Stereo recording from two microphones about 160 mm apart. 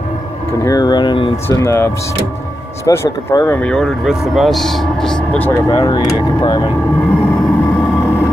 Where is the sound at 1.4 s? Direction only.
15° left (ahead or behind).